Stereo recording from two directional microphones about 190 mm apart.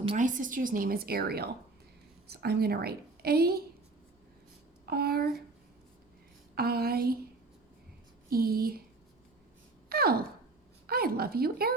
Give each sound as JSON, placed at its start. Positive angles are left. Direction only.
{"t": 0.2, "sound": "a woman's voice", "side_deg": -40}
{"t": 4.9, "sound": "speech", "side_deg": -55}
{"t": 6.6, "sound": "a woman's voice", "side_deg": -55}
{"t": 8.3, "sound": "a woman's voice", "side_deg": -55}
{"t": 9.9, "sound": "wail", "side_deg": -55}
{"t": 10.8, "sound": "a woman's voice", "side_deg": -55}